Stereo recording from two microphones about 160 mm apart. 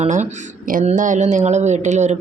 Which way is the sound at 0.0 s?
50° right (ahead or behind).